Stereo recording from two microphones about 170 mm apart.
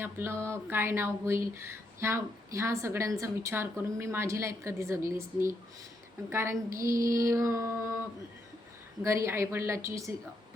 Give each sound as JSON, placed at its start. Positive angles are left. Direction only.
{"t": 0.0, "sound": "speech", "side_deg": -15}
{"t": 9.0, "sound": "speech", "side_deg": -15}